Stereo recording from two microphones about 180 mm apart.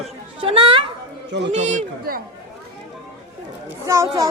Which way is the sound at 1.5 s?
40° right (ahead or behind).